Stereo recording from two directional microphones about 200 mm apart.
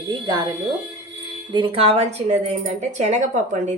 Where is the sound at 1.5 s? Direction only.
25° right (ahead or behind).